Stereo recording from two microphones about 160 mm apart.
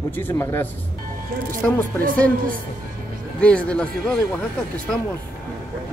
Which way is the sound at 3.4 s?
10° left (ahead or behind).